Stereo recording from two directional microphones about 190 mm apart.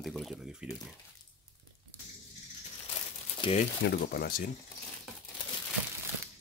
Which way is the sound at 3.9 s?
50° left (ahead or behind).